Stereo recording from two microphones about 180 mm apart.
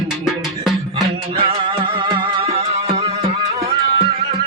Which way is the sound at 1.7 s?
25° right (ahead or behind).